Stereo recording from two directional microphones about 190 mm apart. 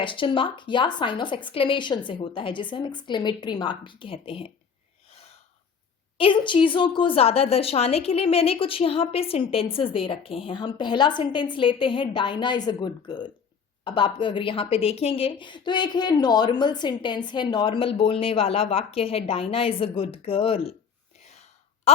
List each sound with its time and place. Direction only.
0.0 s a woman's voice: 25° left (ahead or behind)
6.1 s a woman's voice: 25° left (ahead or behind)
21.2 s gasp: 35° left (ahead or behind)
21.9 s a sound: 35° left (ahead or behind)